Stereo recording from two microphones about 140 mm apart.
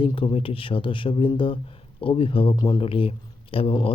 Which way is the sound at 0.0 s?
40° left (ahead or behind).